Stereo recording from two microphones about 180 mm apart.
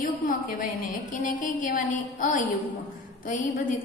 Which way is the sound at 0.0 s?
50° left (ahead or behind).